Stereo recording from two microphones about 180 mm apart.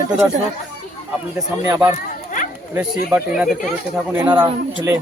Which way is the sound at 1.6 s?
15° right (ahead or behind).